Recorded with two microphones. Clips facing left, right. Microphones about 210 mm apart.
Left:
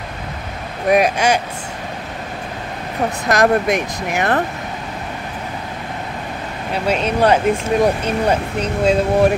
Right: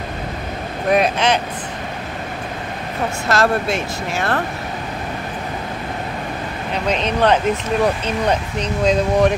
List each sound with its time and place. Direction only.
0.8 s speech: 10° left (ahead or behind)
3.3 s speech: 15° left (ahead or behind)
6.7 s speech: 10° left (ahead or behind)